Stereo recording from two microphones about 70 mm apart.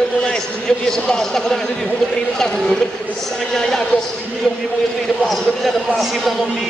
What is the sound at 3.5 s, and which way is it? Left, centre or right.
Speech, centre.